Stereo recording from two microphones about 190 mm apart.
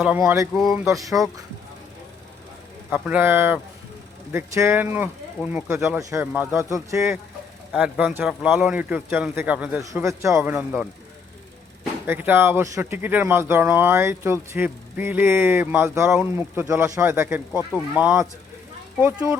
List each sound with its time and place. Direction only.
0.2 s speech: 15° right (ahead or behind)
0.5 s speech: centre (ahead or behind)
0.9 s speech: 20° right (ahead or behind)
2.9 s speech: 10° right (ahead or behind)
12.0 s speech: 10° right (ahead or behind)